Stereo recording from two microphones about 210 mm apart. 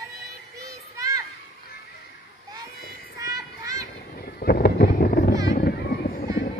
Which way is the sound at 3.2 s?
15° right (ahead or behind).